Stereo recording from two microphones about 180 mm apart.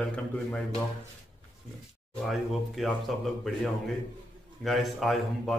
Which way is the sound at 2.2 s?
Centre (ahead or behind).